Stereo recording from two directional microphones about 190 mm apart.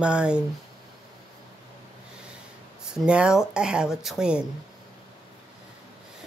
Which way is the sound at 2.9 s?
5° right (ahead or behind).